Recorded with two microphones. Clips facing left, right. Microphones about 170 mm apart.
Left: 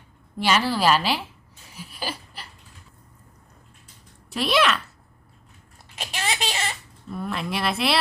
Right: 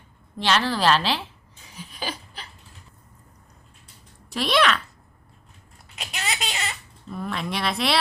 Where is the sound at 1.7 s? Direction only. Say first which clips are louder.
Even; 5° left (ahead or behind).